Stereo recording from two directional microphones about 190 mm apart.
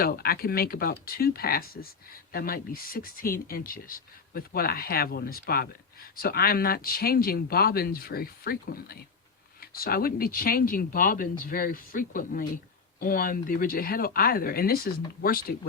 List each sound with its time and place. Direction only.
0.0 s speech: 50° left (ahead or behind)